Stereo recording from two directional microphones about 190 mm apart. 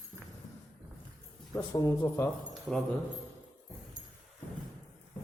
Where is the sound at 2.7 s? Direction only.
5° left (ahead or behind).